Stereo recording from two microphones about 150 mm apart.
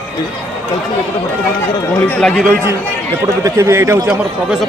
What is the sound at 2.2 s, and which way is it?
Speech, 5° left (ahead or behind).